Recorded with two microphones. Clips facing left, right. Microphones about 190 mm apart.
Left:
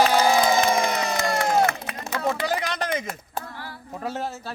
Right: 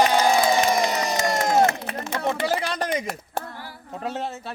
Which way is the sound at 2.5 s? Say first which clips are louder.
Right 1 dB; 30° right (ahead or behind).